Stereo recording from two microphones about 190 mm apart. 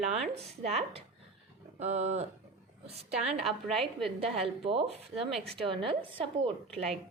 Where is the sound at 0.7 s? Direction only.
35° right (ahead or behind).